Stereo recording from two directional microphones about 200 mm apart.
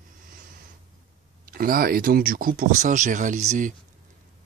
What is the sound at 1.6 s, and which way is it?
Speech, 45° right (ahead or behind).